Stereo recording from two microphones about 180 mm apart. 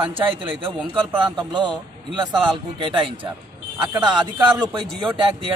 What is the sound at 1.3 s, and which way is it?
Speech, 25° right (ahead or behind).